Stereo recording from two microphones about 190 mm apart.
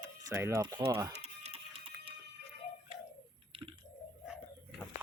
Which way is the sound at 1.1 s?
35° right (ahead or behind).